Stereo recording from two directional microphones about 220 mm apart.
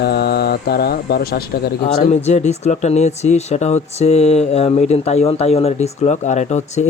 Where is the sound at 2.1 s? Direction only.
30° left (ahead or behind).